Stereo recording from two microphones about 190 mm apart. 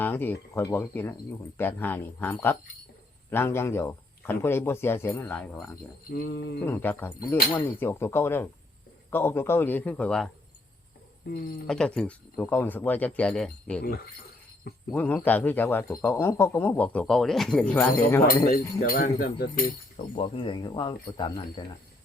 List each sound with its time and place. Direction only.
0.0 s a sound: 10° left (ahead or behind)
0.5 s speech: 15° left (ahead or behind)
6.1 s speech: 50° left (ahead or behind)
6.7 s speech: 10° left (ahead or behind)
11.7 s speech: 5° left (ahead or behind)
14.8 s speech: 10° left (ahead or behind)
18.8 s speech: 50° left (ahead or behind)
20.1 s speech: 30° left (ahead or behind)